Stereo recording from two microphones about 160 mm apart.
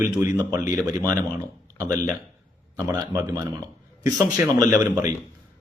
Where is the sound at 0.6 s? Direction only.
20° right (ahead or behind).